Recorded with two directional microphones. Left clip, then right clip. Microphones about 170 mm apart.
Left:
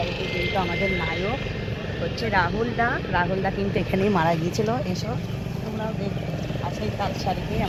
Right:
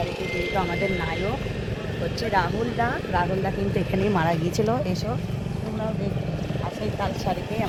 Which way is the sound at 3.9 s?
50° left (ahead or behind).